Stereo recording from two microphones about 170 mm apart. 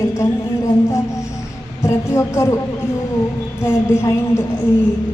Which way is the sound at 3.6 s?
15° left (ahead or behind).